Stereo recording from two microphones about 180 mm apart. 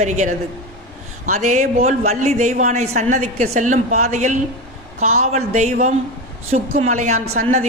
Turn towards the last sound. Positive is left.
turn(degrees=-45)  # may be behind; listen again after turning